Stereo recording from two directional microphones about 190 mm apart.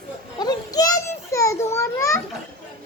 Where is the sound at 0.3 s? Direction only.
20° left (ahead or behind).